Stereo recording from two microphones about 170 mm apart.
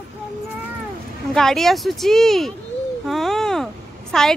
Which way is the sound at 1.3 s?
Centre (ahead or behind).